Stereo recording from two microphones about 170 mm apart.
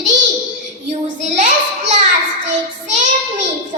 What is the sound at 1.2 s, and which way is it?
Child singing, 45° right (ahead or behind).